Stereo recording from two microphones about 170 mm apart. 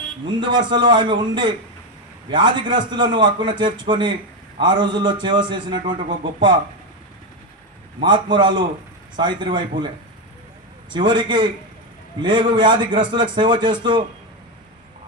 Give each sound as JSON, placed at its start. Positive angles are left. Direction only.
{"t": 0.3, "sound": "a man's voice", "side_deg": -25}
{"t": 8.0, "sound": "a man's voice", "side_deg": -25}
{"t": 10.9, "sound": "a man's voice", "side_deg": -30}